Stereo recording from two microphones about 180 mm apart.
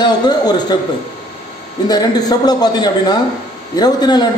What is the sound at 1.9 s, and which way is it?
A man's voice, 20° left (ahead or behind).